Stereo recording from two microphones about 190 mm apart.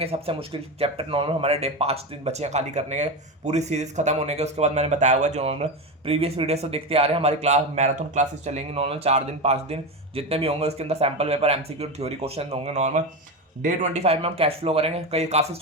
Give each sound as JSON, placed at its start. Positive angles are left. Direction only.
{"t": 0.0, "sound": "speech", "side_deg": -30}